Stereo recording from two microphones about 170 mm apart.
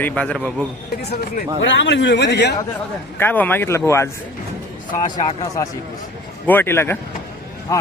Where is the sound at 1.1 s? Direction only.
80° left.